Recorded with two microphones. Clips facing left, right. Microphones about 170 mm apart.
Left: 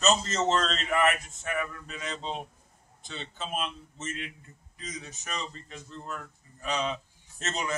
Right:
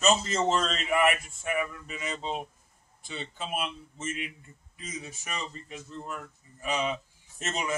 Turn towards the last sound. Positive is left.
turn(degrees=-10)  # may be behind; listen again after turning